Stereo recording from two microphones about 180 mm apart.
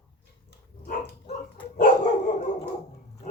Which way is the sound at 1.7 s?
55° left (ahead or behind).